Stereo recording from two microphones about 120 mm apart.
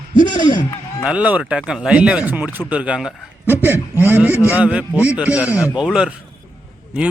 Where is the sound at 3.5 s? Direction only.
20° right (ahead or behind).